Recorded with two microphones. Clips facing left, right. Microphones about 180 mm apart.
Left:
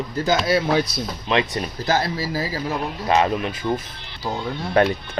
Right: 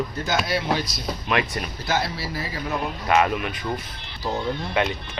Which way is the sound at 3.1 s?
30° left (ahead or behind).